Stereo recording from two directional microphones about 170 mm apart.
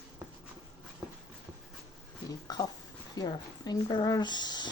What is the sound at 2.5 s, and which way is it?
Speech, 25° left (ahead or behind).